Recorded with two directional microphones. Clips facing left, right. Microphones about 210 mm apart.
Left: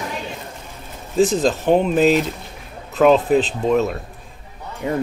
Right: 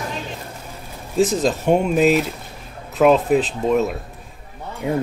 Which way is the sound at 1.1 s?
Centre (ahead or behind).